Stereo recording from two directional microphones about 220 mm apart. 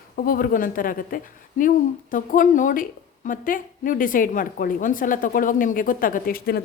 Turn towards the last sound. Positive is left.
turn(degrees=45)  # may be behind; listen again after turning